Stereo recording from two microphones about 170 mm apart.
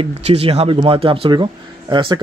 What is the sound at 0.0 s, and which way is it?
Speech, 35° right (ahead or behind).